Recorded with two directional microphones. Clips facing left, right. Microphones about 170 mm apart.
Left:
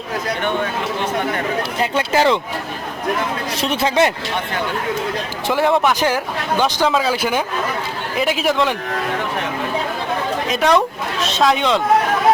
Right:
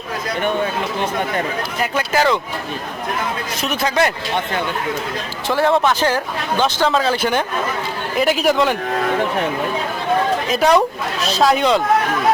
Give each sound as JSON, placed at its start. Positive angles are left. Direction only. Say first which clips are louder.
{"t": 1.8, "sound": "speech", "louder": "left 1 dB", "side_deg": 25}
{"t": 3.6, "sound": "speech", "louder": "left 2 dB", "side_deg": 30}
{"t": 5.5, "sound": "a woman's voice", "louder": "even", "side_deg": 15}
{"t": 10.5, "sound": "a woman's voice", "louder": "right 1 dB", "side_deg": -5}